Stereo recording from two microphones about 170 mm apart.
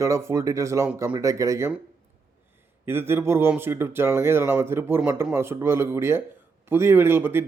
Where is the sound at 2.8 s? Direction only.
15° right (ahead or behind).